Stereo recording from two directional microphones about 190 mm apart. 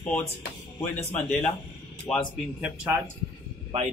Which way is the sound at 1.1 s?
5° left (ahead or behind).